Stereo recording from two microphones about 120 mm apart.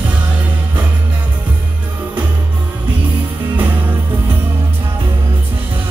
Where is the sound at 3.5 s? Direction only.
15° right (ahead or behind).